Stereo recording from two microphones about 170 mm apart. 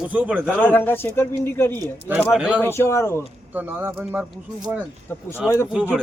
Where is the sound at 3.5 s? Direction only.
10° right (ahead or behind).